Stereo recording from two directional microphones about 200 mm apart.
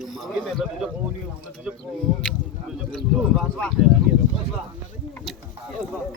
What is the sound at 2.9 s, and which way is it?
Speech, centre (ahead or behind).